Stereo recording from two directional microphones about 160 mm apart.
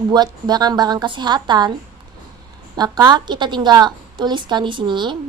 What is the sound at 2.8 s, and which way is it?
Speech, 25° right (ahead or behind).